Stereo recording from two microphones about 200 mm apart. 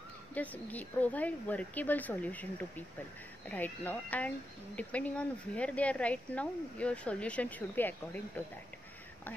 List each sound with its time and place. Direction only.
0.3 s speech: 5° left (ahead or behind)